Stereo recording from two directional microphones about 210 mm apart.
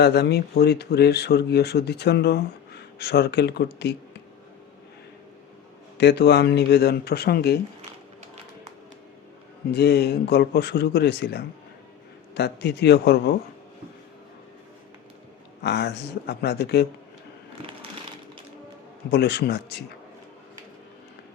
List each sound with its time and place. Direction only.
0.0 s speech: 50° left (ahead or behind)
6.0 s speech: 50° left (ahead or behind)
9.7 s speech: 50° left (ahead or behind)
15.6 s speech: 50° left (ahead or behind)
19.1 s speech: 50° left (ahead or behind)